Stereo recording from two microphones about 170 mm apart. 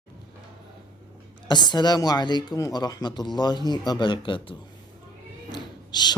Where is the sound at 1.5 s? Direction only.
25° left (ahead or behind).